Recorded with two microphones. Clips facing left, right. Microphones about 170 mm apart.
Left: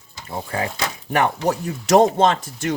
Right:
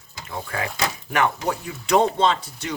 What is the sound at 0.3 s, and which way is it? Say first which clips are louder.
Speech: left 3 dB; 30° left (ahead or behind).